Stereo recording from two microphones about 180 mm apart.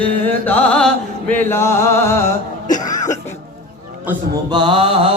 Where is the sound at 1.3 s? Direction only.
15° left (ahead or behind).